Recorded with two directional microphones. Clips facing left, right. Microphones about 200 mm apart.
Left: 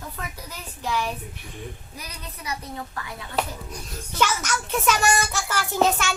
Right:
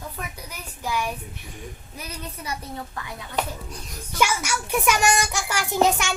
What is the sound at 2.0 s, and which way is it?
Speech, 25° right (ahead or behind).